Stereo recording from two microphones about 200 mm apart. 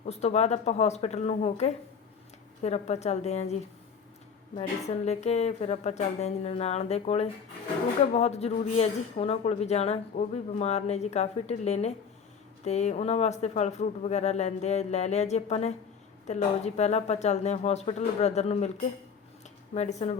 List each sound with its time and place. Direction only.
0.0 s speech: 35° left (ahead or behind)
4.5 s speech: 30° left (ahead or behind)
19.7 s speech: 35° left (ahead or behind)